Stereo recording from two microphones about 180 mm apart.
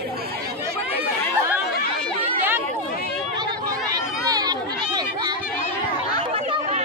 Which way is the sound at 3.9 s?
20° right (ahead or behind).